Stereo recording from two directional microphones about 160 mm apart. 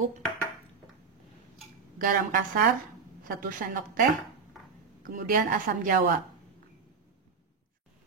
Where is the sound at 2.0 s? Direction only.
60° right (ahead or behind).